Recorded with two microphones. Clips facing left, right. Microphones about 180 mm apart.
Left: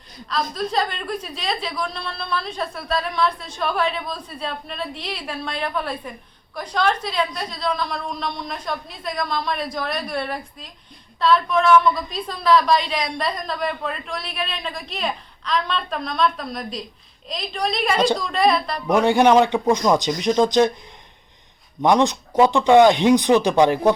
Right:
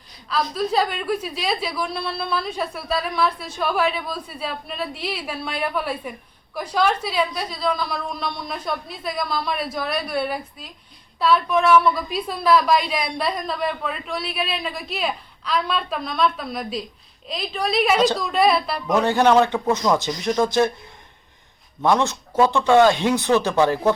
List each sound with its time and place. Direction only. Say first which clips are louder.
0.5 s a woman's voice: right 4 dB; 5° right (ahead or behind)
18.9 s speech: left 2 dB; 15° left (ahead or behind)
21.8 s speech: left 3 dB; 15° left (ahead or behind)